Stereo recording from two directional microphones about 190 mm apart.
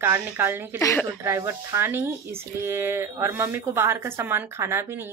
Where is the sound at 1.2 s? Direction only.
15° right (ahead or behind).